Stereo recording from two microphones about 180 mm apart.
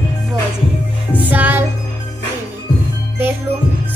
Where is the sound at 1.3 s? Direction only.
10° right (ahead or behind).